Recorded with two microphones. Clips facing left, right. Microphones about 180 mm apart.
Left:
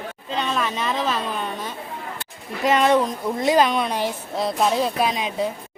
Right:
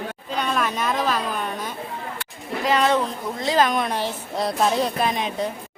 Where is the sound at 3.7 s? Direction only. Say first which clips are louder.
Left 1 dB; centre (ahead or behind).